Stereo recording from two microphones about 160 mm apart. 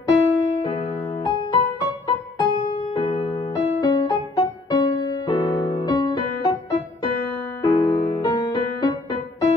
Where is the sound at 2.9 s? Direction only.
25° left (ahead or behind).